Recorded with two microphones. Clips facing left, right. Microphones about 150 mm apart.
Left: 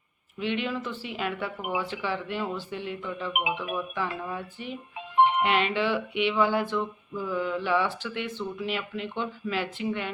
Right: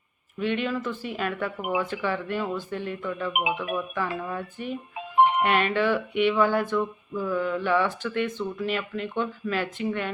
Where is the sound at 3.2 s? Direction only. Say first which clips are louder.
Right 2 dB; centre (ahead or behind).